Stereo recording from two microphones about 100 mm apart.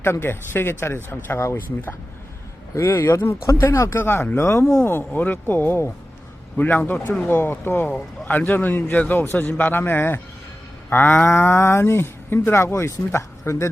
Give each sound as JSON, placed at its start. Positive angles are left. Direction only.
{"t": 0.0, "sound": "speech", "side_deg": 25}
{"t": 2.7, "sound": "a man's voice", "side_deg": 30}